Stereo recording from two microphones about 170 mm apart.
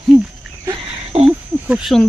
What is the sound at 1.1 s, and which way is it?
Speech, 35° right (ahead or behind).